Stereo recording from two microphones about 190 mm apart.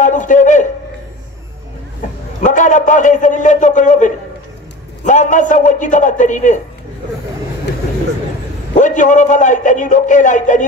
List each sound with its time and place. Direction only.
0.0 s a sound: 40° left (ahead or behind)
2.4 s a man's voice: 40° left (ahead or behind)
8.7 s a man's voice: 40° left (ahead or behind)